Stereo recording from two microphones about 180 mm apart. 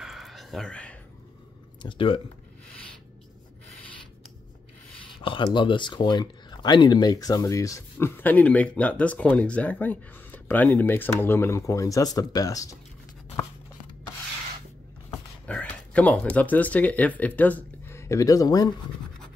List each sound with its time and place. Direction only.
0.0 s a sound: centre (ahead or behind)
1.8 s speech: 30° left (ahead or behind)
5.2 s speech: 25° left (ahead or behind)
15.4 s speech: 5° left (ahead or behind)